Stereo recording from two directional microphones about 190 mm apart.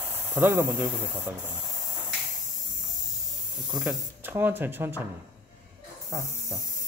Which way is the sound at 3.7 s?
5° right (ahead or behind).